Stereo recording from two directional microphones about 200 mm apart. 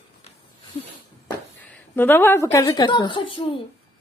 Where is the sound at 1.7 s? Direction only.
10° left (ahead or behind).